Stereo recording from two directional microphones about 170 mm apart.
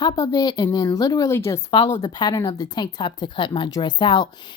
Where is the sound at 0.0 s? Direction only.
20° left (ahead or behind).